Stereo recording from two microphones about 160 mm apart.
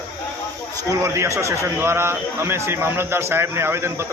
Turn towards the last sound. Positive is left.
turn(degrees=-15)  # may be behind; listen again after turning